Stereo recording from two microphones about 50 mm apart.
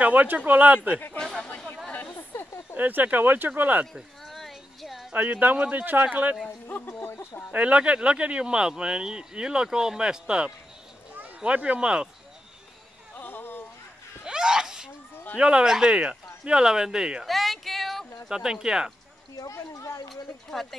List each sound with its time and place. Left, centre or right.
0.0 s speech: right
2.1 s a sound: left
2.7 s speech: right
3.8 s sheep: centre
5.1 s speech: right
6.9 s speech: left
7.5 s speech: right
13.1 s a sound: left
14.2 s sneeze: centre
15.3 s speech: centre
17.3 s a sound: centre
18.3 s speech: centre
19.4 s speech: left